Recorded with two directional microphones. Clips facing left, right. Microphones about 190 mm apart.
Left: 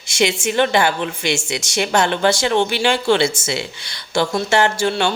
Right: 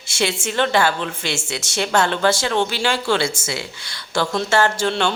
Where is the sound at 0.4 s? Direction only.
15° left (ahead or behind).